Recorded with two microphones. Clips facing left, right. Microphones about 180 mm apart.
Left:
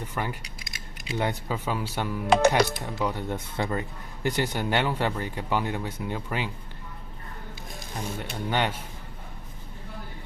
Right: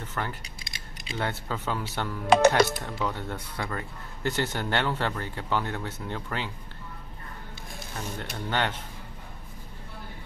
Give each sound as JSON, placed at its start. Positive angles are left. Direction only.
{"t": 0.0, "sound": "speech", "side_deg": 10}
{"t": 0.6, "sound": "mechanisms", "side_deg": -30}
{"t": 1.1, "sound": "speech", "side_deg": 15}
{"t": 7.9, "sound": "speech", "side_deg": 15}